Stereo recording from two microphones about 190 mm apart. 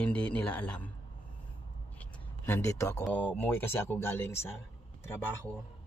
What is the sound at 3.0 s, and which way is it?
Speech, 10° left (ahead or behind).